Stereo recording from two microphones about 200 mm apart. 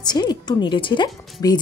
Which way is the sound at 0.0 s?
20° left (ahead or behind).